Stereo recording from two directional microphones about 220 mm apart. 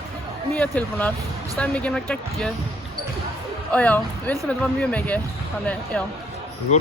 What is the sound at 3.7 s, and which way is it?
Speech, 5° left (ahead or behind).